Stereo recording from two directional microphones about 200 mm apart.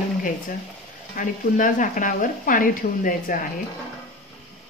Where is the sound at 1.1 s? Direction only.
40° left (ahead or behind).